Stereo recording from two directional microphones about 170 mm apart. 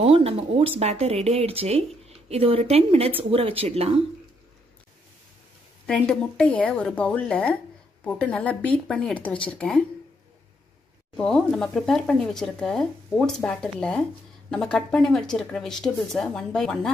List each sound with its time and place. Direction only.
0.0 s speech: 35° right (ahead or behind)
5.9 s a woman's voice: 5° left (ahead or behind)
11.1 s speech: 5° left (ahead or behind)